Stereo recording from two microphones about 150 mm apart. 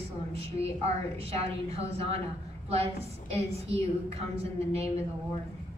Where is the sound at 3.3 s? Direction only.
45° right (ahead or behind).